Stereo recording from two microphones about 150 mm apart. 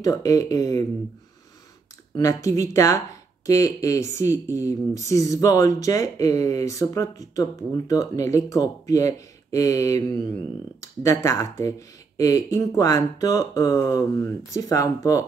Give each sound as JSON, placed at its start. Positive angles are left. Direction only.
{"t": 0.0, "sound": "speech", "side_deg": 20}
{"t": 2.1, "sound": "speech", "side_deg": 20}